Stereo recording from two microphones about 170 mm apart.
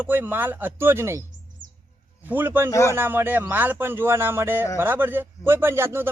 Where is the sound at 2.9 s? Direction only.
15° right (ahead or behind).